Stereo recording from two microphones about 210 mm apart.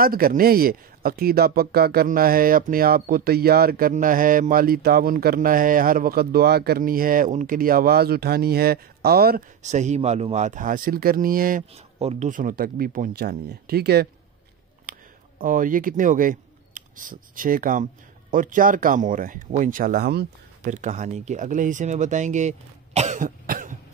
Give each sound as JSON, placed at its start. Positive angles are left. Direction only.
{"t": 0.0, "sound": "speech", "side_deg": -45}
{"t": 11.7, "sound": "speech", "side_deg": -30}
{"t": 20.7, "sound": "speech", "side_deg": -35}